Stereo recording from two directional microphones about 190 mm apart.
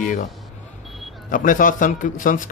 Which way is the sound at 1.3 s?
45° left (ahead or behind).